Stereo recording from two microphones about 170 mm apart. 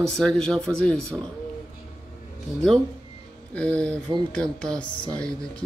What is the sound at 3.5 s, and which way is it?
Speech, 5° left (ahead or behind).